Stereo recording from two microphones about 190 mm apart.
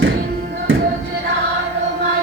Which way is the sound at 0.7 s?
90° right.